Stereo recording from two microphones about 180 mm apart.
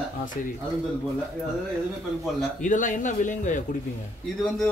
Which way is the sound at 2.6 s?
45° left (ahead or behind).